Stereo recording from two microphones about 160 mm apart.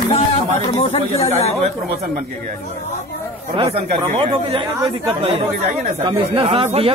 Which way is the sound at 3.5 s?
35° right (ahead or behind).